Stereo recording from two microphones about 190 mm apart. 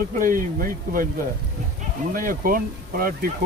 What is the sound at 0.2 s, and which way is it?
Speech, 45° right (ahead or behind).